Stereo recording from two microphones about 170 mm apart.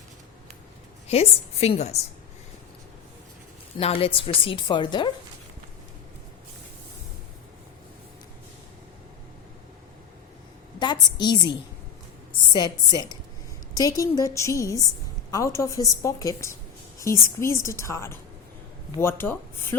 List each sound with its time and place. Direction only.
1.0 s a woman's voice: 35° left (ahead or behind)
3.8 s a woman's voice: 35° left (ahead or behind)
10.8 s a sound: 25° left (ahead or behind)
12.5 s a woman's voice: 25° left (ahead or behind)